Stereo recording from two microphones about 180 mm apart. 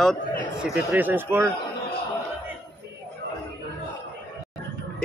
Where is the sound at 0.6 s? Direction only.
5° right (ahead or behind).